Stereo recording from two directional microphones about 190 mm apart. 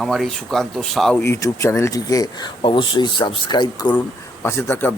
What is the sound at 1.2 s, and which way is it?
Speech, 15° left (ahead or behind).